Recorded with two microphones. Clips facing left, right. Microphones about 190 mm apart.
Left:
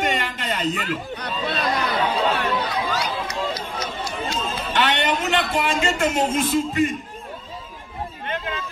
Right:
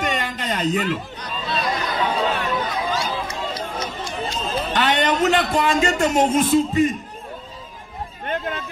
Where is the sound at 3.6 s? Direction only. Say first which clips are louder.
Right 2 dB; 45° right (ahead or behind).